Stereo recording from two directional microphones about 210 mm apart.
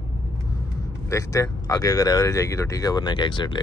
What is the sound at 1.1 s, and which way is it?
Speech, 15° left (ahead or behind).